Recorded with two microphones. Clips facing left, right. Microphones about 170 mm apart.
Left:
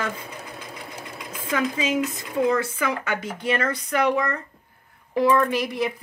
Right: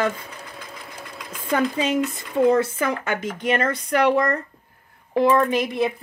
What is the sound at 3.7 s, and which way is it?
Speech, 55° right (ahead or behind).